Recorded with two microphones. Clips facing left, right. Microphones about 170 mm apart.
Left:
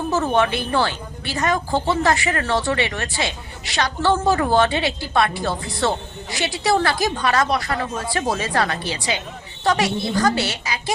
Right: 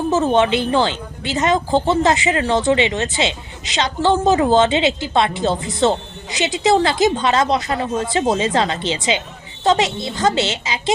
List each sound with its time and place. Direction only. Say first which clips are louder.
0.1 s a woman's voice: right 4 dB; 20° right (ahead or behind)